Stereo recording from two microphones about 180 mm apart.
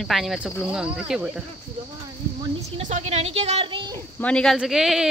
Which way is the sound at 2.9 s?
35° right (ahead or behind).